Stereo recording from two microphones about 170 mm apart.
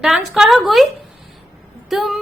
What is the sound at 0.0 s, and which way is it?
Female singing, centre (ahead or behind).